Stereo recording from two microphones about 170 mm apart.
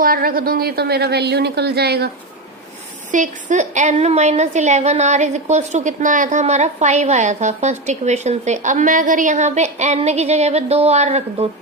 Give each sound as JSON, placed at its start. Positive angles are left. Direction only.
{"t": 0.0, "sound": "a woman's voice", "side_deg": -60}
{"t": 3.1, "sound": "a woman's voice", "side_deg": -45}